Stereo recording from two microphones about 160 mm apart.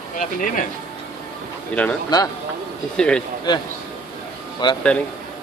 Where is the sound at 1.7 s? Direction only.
10° left (ahead or behind).